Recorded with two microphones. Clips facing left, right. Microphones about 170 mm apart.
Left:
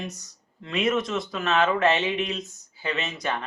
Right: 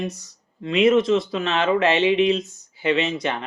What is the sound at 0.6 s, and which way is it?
Speech, 30° right (ahead or behind).